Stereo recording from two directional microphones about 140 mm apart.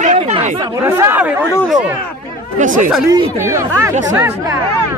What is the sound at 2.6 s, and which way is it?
Speech, 65° right (ahead or behind).